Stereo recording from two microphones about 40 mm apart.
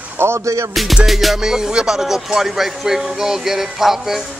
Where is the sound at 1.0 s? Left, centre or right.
Centre.